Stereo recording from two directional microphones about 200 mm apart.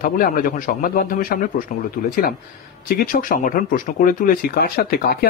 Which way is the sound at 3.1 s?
45° left (ahead or behind).